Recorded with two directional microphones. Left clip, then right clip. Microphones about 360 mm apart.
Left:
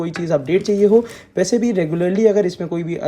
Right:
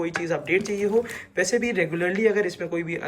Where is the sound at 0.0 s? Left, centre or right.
Centre.